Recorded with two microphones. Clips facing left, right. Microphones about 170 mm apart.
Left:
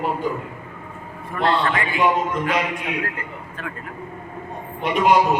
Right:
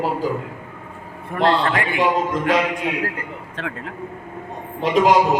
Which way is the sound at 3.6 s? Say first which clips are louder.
Right 4 dB; 85° right.